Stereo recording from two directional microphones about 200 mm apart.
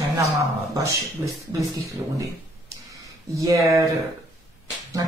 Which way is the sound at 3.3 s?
15° right (ahead or behind).